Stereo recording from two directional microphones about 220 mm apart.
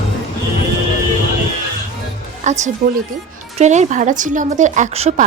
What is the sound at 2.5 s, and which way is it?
Speech, 35° right (ahead or behind).